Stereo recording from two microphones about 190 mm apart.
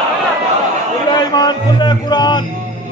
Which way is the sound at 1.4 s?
20° left (ahead or behind).